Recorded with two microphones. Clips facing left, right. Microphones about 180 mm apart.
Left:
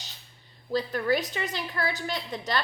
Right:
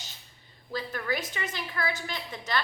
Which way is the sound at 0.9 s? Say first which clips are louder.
Left 5 dB; 35° left (ahead or behind).